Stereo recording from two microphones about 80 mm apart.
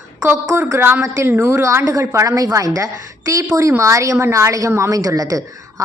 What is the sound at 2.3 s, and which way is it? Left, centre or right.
A woman's voice, right.